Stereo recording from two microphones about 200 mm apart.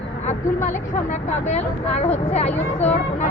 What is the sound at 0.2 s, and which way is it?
Speech, 35° left (ahead or behind).